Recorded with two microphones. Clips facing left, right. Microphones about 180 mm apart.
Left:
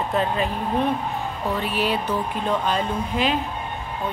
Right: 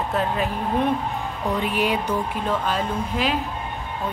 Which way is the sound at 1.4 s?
15° right (ahead or behind).